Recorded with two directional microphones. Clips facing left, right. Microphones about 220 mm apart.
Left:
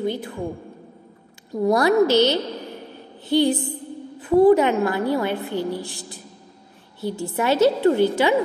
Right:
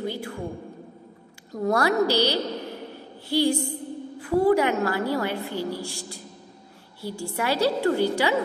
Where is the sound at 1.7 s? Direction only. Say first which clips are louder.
Left 5 dB; 20° left (ahead or behind).